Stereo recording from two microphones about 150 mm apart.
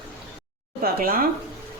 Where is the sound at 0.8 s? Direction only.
75° right (ahead or behind).